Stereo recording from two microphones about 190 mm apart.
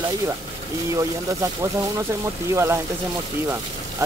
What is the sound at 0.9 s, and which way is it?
Speech, 15° right (ahead or behind).